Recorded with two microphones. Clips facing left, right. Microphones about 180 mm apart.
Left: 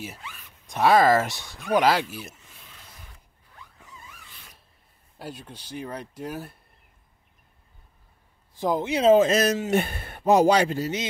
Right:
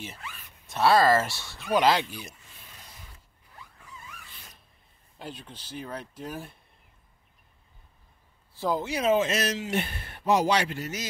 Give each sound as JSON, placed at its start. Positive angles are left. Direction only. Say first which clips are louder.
{"t": 0.7, "sound": "speech", "louder": "left 2 dB", "side_deg": 15}
{"t": 5.2, "sound": "speech", "louder": "left 2 dB", "side_deg": 10}
{"t": 8.5, "sound": "speech", "louder": "left 4 dB", "side_deg": 15}
{"t": 9.1, "sound": "speech", "louder": "left 7 dB", "side_deg": 40}